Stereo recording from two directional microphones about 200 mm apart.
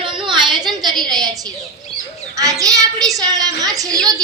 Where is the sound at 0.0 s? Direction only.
25° right (ahead or behind).